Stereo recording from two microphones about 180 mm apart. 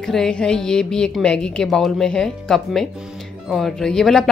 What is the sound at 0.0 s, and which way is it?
Speech, 5° left (ahead or behind).